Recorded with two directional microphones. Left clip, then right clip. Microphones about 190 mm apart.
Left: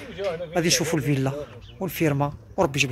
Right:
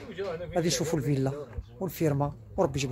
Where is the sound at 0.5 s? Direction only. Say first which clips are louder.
Left 5 dB; 5° left (ahead or behind).